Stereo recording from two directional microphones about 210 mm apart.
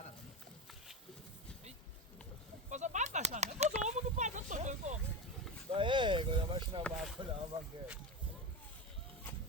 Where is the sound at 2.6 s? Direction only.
35° right (ahead or behind).